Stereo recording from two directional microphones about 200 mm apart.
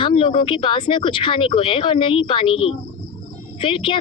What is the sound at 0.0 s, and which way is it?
A woman's voice, 25° left (ahead or behind).